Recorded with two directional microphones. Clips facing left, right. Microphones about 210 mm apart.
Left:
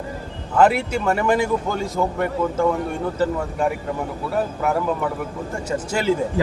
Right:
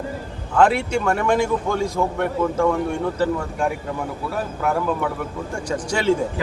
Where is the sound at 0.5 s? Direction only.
5° left (ahead or behind).